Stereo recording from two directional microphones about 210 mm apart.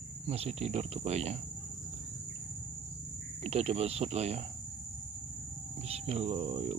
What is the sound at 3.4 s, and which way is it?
Speech, 30° right (ahead or behind).